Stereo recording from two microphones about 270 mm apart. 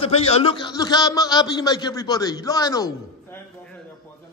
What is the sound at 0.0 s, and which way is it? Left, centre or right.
A man's voice, left.